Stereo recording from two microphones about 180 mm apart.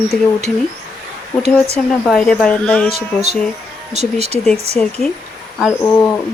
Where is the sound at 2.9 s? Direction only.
40° right (ahead or behind).